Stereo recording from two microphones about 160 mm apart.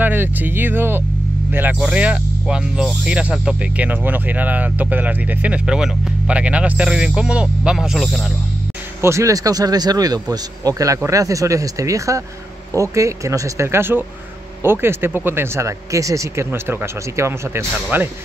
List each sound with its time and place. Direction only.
0.0 s speech: 10° right (ahead or behind)
9.0 s speech: 20° right (ahead or behind)